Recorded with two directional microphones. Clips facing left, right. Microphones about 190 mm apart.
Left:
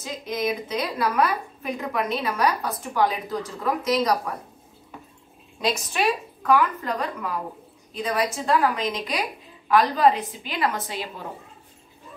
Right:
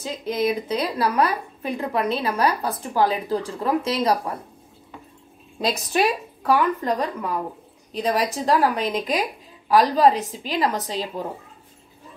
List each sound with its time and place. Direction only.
0.0 s a woman's voice: 30° right (ahead or behind)
5.6 s a woman's voice: 35° right (ahead or behind)